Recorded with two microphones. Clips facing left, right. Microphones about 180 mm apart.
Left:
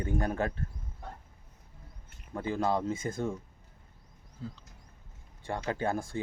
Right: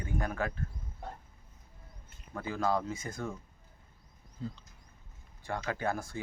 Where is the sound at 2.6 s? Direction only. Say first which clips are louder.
Even; 25° left (ahead or behind).